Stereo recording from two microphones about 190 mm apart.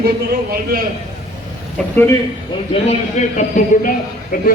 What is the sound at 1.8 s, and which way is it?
Speech, centre (ahead or behind).